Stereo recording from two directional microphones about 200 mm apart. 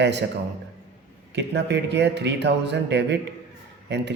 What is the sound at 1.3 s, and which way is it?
Speech, 60° right (ahead or behind).